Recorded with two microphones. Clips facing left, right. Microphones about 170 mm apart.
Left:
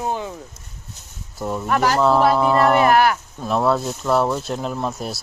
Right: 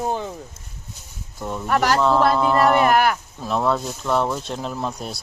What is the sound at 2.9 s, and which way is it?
Speech, 50° right (ahead or behind).